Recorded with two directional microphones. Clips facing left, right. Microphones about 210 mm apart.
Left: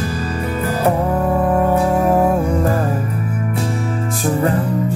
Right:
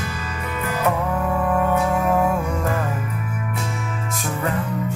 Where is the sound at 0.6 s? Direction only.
35° left (ahead or behind).